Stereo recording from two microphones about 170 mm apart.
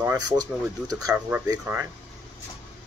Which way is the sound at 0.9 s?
15° right (ahead or behind).